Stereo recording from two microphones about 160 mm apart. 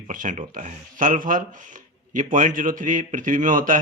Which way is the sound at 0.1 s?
55° right (ahead or behind).